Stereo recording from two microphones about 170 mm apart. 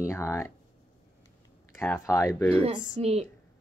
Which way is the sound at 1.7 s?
15° left (ahead or behind).